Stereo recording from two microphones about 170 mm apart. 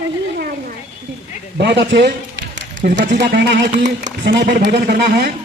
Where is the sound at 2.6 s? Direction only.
90° right.